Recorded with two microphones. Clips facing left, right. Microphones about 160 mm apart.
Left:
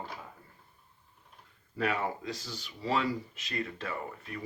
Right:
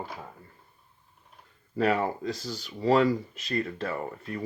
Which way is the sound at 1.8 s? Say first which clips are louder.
Right 6 dB; 40° right (ahead or behind).